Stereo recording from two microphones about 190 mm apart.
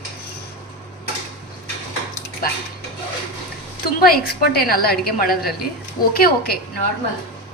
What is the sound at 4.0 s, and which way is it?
A woman's voice, 55° left (ahead or behind).